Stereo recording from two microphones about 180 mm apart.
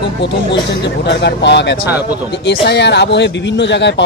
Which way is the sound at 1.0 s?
75° left (ahead or behind).